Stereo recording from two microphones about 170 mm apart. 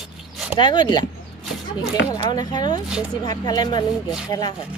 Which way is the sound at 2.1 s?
25° left (ahead or behind).